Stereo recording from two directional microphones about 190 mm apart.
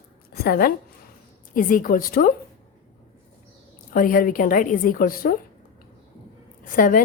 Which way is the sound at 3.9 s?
45° left (ahead or behind).